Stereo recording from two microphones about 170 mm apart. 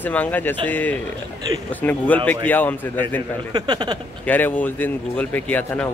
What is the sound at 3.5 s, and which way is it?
Speech, 25° right (ahead or behind).